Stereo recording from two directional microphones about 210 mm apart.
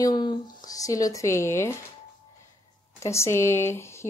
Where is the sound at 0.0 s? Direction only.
20° left (ahead or behind).